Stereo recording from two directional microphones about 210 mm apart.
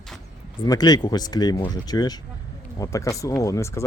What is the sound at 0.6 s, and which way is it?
Speech, 20° left (ahead or behind).